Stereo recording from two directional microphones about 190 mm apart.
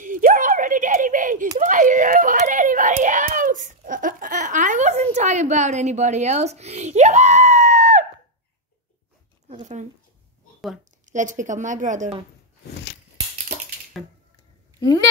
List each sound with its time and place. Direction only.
0.0 s a sound: 45° right (ahead or behind)
1.6 s whimper: 45° right (ahead or behind)
9.5 s speech: 40° right (ahead or behind)
11.1 s a woman's voice: 40° right (ahead or behind)